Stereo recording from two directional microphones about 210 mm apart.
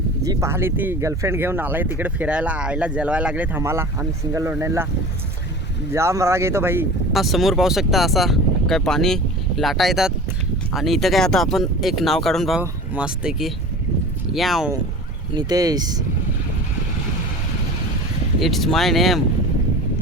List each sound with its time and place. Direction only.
0.3 s speech: 15° right (ahead or behind)
5.9 s speech: 15° right (ahead or behind)
7.1 s speech: centre (ahead or behind)
15.4 s speech: 20° right (ahead or behind)
18.3 s speech: centre (ahead or behind)